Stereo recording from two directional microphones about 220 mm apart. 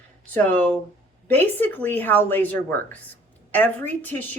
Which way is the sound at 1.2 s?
10° left (ahead or behind).